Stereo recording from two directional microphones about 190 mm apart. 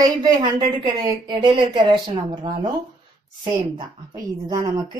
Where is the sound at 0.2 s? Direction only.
20° right (ahead or behind).